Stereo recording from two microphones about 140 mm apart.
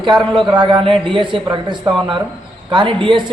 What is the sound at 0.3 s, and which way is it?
Speech, 35° right (ahead or behind).